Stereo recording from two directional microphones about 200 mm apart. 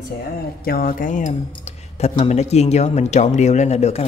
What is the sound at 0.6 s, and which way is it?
Speech, 45° left (ahead or behind).